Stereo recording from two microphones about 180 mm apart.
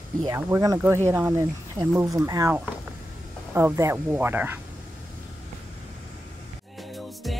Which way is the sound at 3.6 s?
15° right (ahead or behind).